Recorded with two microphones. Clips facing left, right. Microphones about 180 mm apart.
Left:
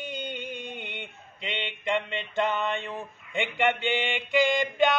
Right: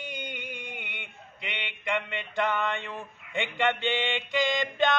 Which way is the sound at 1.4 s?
15° right (ahead or behind).